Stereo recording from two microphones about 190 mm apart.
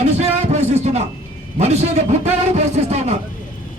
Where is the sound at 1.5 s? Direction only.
35° right (ahead or behind).